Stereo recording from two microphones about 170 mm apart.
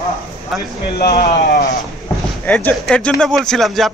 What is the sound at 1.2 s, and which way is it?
Speech, 60° left (ahead or behind).